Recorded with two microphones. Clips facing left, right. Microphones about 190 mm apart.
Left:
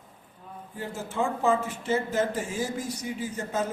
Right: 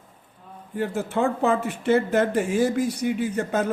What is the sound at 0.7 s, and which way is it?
Speech, 65° right (ahead or behind).